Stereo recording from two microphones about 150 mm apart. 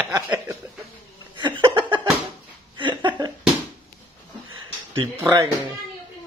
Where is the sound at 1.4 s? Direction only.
30° right (ahead or behind).